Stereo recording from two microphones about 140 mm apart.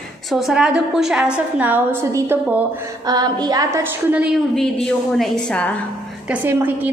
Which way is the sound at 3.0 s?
30° right (ahead or behind).